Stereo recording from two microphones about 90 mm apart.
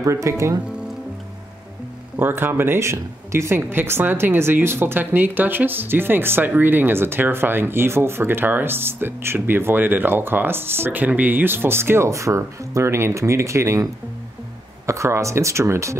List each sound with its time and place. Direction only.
0.0 s speech: 35° right (ahead or behind)
2.1 s speech: 25° right (ahead or behind)
14.9 s speech: 35° right (ahead or behind)